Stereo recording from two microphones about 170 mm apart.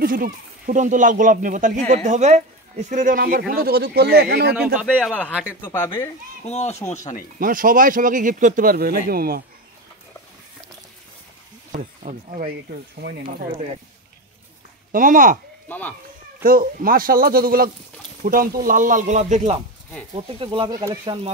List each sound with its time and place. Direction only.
0.0 s speech: 55° right (ahead or behind); by 4.6 s 70° right (ahead or behind)
4.8 s speech: 5° left (ahead or behind)
6.4 s speech: 40° left (ahead or behind)
7.3 s speech: 55° right (ahead or behind)
11.7 s speech: 45° right (ahead or behind)
13.0 s speech: 70° right (ahead or behind)
13.4 s speech: 40° right (ahead or behind)
14.9 s speech: 55° right (ahead or behind)
16.4 s speech: 55° right (ahead or behind)
20.4 s speech: 30° right (ahead or behind)